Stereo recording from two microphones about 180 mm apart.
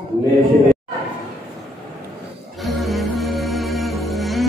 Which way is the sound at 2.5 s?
Centre (ahead or behind).